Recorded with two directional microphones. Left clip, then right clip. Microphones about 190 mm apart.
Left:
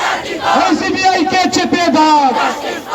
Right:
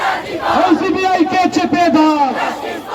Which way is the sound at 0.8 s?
25° left (ahead or behind).